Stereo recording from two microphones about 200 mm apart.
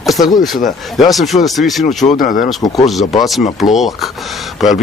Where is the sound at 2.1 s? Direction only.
40° left (ahead or behind).